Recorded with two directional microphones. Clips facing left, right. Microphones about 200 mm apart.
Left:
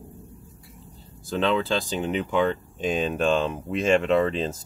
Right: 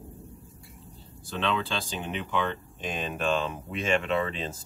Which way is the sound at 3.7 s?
40° left (ahead or behind).